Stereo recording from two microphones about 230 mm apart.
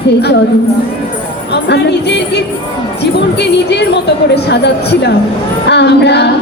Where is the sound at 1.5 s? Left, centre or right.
Left.